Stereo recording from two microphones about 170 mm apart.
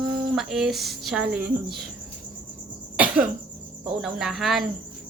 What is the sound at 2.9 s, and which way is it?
Cough, 10° right (ahead or behind).